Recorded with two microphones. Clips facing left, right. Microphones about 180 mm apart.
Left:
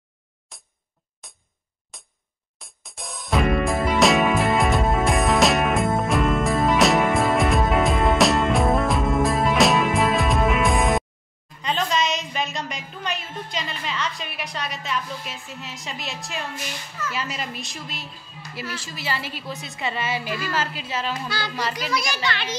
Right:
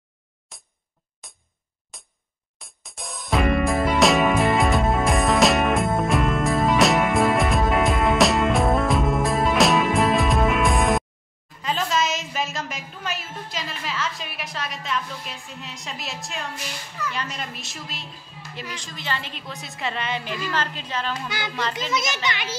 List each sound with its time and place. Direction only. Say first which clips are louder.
0.5 s a sound: even; centre (ahead or behind)
1.9 s music: even; centre (ahead or behind)
11.6 s a woman's voice: even; 5° right (ahead or behind)
21.9 s a child's voice: even; 20° right (ahead or behind)